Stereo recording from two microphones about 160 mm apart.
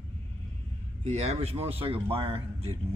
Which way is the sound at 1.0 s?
40° right (ahead or behind).